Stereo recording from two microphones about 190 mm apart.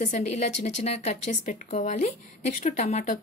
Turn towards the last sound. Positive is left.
turn(degrees=35)  # may be behind; listen again after turning